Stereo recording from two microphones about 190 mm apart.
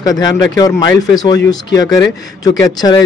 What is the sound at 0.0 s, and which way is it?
Speech, 20° left (ahead or behind).